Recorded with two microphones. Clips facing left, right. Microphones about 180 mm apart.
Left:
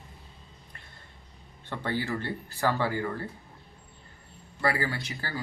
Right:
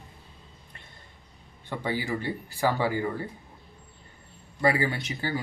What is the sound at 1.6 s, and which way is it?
Speech, 10° right (ahead or behind).